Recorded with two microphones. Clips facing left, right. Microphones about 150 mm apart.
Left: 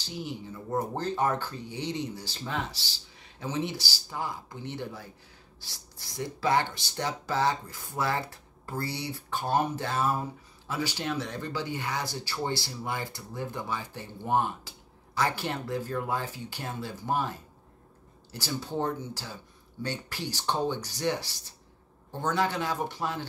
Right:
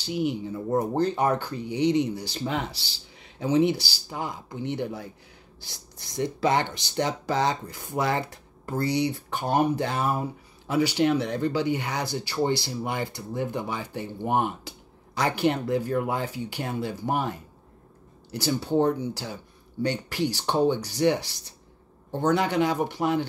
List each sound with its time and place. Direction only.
0.1 s speech: 15° right (ahead or behind)
11.0 s speech: 60° right (ahead or behind)
11.5 s speech: 15° right (ahead or behind)